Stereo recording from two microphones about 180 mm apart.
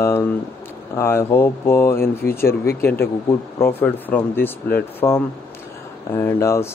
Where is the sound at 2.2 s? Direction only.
60° left (ahead or behind).